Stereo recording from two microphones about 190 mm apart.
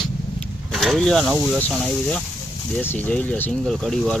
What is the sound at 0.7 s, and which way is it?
Speech, centre (ahead or behind).